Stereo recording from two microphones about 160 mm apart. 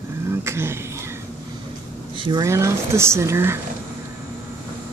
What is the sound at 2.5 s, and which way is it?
Speech, 20° right (ahead or behind).